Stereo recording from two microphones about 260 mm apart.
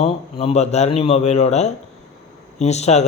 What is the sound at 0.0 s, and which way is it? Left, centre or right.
A man's voice, left.